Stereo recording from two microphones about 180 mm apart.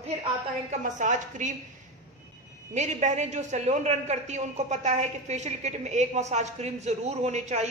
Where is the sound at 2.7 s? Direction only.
40° right (ahead or behind).